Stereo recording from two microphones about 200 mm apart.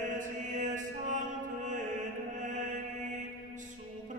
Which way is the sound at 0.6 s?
40° right (ahead or behind).